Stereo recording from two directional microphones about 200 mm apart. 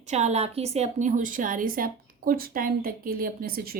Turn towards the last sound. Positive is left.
turn(degrees=-50)  # may be behind; listen again after turning